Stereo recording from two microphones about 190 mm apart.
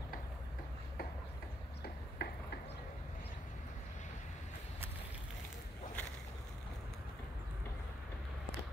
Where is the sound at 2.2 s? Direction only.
55° left (ahead or behind).